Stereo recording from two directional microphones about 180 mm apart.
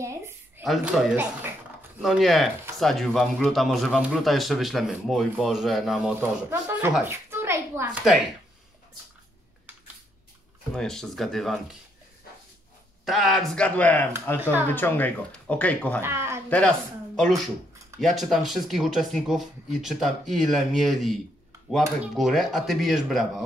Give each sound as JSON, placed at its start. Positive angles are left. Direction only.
{"t": 0.0, "sound": "a sound", "side_deg": -15}
{"t": 0.7, "sound": "a man's voice", "side_deg": -5}
{"t": 10.8, "sound": "a man's voice", "side_deg": 0}
{"t": 13.0, "sound": "a man's voice", "side_deg": 0}
{"t": 14.4, "sound": "speech", "side_deg": -10}
{"t": 14.7, "sound": "speech", "side_deg": 10}
{"t": 16.0, "sound": "speech", "side_deg": -15}
{"t": 16.4, "sound": "a man's voice", "side_deg": 5}